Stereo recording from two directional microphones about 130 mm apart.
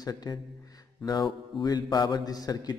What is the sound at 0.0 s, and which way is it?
A man's voice, 30° left (ahead or behind).